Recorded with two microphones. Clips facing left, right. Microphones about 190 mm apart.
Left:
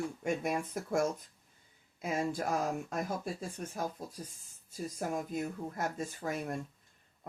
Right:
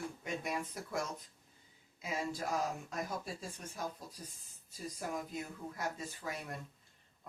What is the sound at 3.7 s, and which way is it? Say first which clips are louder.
Speech: left 5 dB; 50° left (ahead or behind).